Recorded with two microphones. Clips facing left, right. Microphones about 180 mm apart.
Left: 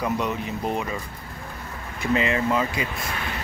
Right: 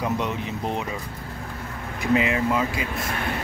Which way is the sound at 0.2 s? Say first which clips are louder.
Left 1 dB; 20° right (ahead or behind).